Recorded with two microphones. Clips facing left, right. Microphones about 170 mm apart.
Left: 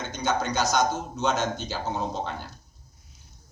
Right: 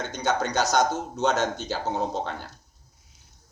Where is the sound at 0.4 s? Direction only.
40° right (ahead or behind).